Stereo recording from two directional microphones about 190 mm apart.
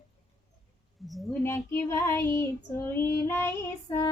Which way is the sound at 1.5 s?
15° left (ahead or behind).